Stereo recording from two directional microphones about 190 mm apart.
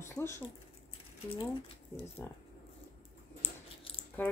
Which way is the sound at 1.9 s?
10° left (ahead or behind).